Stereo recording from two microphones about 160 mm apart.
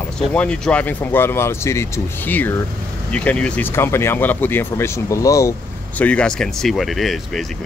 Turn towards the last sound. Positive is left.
turn(degrees=0)  # may be behind; listen again after turning